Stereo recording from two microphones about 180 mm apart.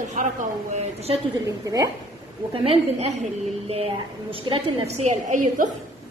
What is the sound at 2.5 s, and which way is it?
Speech, 30° right (ahead or behind).